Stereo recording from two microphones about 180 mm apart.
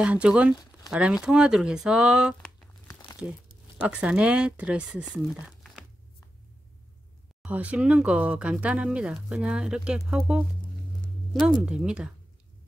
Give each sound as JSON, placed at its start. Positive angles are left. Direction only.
{"t": 0.0, "sound": "speech", "side_deg": -5}
{"t": 2.9, "sound": "crumpling", "side_deg": 20}
{"t": 3.8, "sound": "speech", "side_deg": -5}
{"t": 7.4, "sound": "speech", "side_deg": -10}